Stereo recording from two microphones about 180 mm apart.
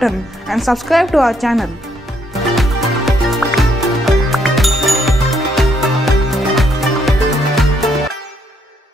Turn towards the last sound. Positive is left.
turn(degrees=0)  # may be behind; listen again after turning